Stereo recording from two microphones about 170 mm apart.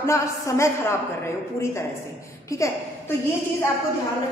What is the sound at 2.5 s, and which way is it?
Speech, 20° left (ahead or behind).